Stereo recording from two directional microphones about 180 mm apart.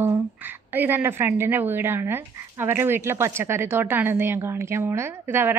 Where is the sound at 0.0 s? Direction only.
10° right (ahead or behind).